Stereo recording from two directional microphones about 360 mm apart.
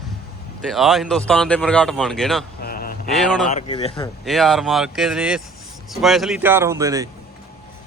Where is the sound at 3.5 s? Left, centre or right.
Centre.